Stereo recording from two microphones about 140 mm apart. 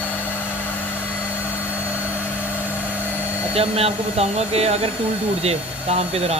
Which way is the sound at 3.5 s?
45° right (ahead or behind).